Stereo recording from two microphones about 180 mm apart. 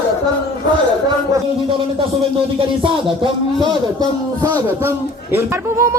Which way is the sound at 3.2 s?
25° right (ahead or behind).